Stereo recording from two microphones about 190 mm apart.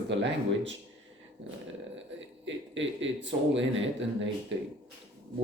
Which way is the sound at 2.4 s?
75° right (ahead or behind).